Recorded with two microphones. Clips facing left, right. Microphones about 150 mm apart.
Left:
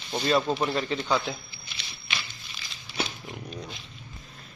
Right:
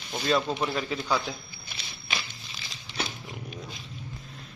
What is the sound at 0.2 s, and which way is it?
Speech, 5° left (ahead or behind).